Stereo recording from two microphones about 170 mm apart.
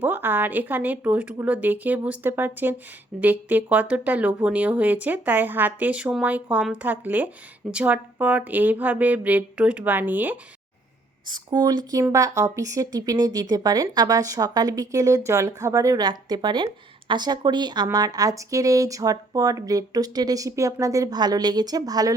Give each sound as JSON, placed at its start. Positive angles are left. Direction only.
{"t": 0.0, "sound": "speech", "side_deg": -10}
{"t": 11.3, "sound": "speech", "side_deg": -25}